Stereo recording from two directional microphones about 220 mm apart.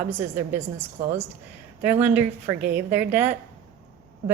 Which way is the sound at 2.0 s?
10° right (ahead or behind).